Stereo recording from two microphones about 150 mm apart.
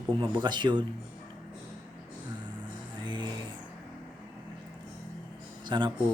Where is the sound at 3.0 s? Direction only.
30° right (ahead or behind).